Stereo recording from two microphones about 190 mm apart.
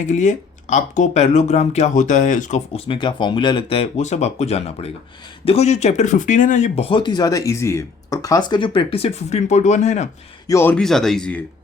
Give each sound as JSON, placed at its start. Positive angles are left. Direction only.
{"t": 0.0, "sound": "speech", "side_deg": 40}
{"t": 10.4, "sound": "speech", "side_deg": 15}